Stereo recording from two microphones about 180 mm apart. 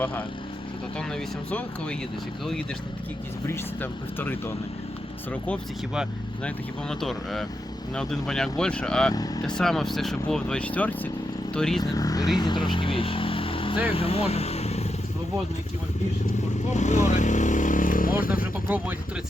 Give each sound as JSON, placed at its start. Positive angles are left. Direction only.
{"t": 0.0, "sound": "speech", "side_deg": 10}
{"t": 3.4, "sound": "speech", "side_deg": 15}
{"t": 7.0, "sound": "speech", "side_deg": 0}
{"t": 9.1, "sound": "speech", "side_deg": 20}
{"t": 9.6, "sound": "speech", "side_deg": 0}
{"t": 11.8, "sound": "speech", "side_deg": 20}
{"t": 16.6, "sound": "vehicle", "side_deg": 40}
{"t": 18.7, "sound": "speech", "side_deg": -10}